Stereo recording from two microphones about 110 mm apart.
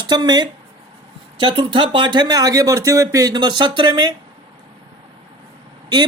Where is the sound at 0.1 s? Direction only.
40° right (ahead or behind).